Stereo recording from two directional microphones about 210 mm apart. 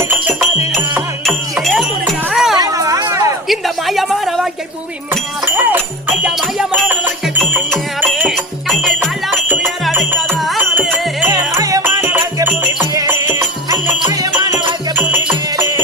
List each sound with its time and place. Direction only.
0.1 s music: 5° right (ahead or behind)
2.6 s music: 15° right (ahead or behind)
3.5 s a woman's voice: centre (ahead or behind)
5.5 s music: 10° right (ahead or behind)
14.9 s music: 10° right (ahead or behind)